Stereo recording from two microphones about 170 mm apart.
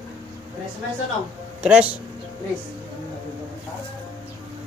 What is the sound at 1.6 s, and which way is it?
Speech, 10° right (ahead or behind).